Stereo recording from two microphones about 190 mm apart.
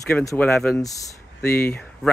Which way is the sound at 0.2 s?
15° left (ahead or behind).